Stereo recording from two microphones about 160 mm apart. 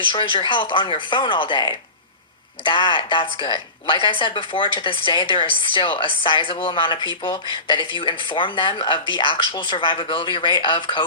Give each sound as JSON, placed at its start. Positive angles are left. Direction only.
{"t": 0.1, "sound": "a woman's voice", "side_deg": 30}